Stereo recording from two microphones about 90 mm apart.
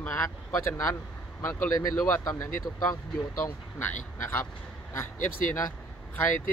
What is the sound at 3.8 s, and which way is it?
Speech, 25° left (ahead or behind).